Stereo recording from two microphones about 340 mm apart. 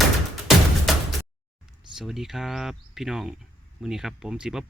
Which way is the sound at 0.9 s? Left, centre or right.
Centre.